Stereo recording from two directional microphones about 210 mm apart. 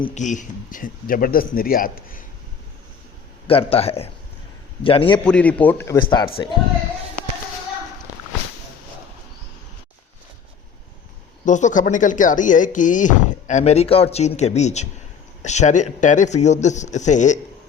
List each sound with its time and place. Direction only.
0.0 s speech: 35° left (ahead or behind)
3.7 s speech: 30° left (ahead or behind)
5.2 s a man's voice: 5° left (ahead or behind); by 6.6 s 25° left (ahead or behind)
11.4 s speech: 35° left (ahead or behind)